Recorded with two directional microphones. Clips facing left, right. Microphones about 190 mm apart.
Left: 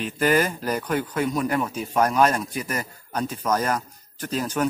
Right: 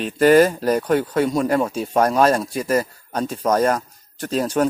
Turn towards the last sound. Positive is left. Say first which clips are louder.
# right 5 dB
turn(degrees=-30)  # may be behind; listen again after turning